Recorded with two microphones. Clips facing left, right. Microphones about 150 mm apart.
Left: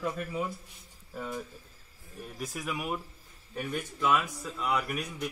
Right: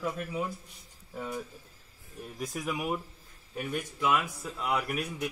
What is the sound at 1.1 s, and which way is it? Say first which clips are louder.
Speech: even; 5° right (ahead or behind).